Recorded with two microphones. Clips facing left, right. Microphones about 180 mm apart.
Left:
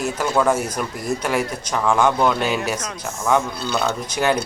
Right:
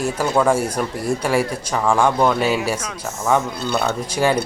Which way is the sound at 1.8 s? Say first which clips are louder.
Right 1 dB; 10° right (ahead or behind).